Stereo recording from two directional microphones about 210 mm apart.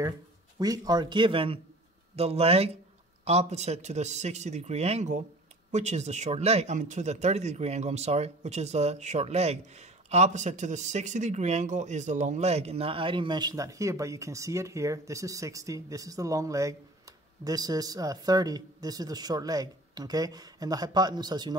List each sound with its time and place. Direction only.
0.6 s a man's voice: 20° right (ahead or behind)